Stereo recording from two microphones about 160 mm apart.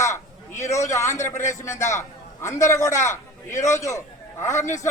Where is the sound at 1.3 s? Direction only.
50° left (ahead or behind).